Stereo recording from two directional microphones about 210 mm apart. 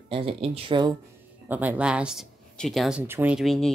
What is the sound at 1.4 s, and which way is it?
Speech, 10° right (ahead or behind).